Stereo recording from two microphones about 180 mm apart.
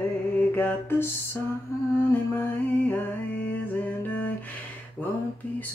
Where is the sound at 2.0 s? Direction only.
10° left (ahead or behind).